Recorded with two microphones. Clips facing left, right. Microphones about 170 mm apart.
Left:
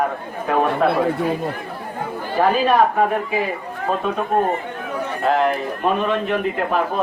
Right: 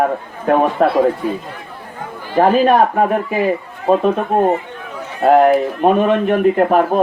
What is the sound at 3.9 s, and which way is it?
Speech, 45° right (ahead or behind).